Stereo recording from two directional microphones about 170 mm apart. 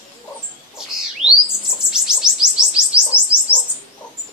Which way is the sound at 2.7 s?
5° right (ahead or behind).